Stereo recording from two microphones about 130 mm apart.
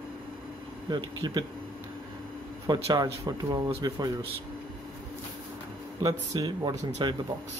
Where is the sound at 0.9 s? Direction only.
35° right (ahead or behind).